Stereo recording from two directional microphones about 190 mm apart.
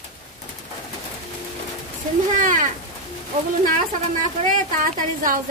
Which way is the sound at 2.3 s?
40° right (ahead or behind).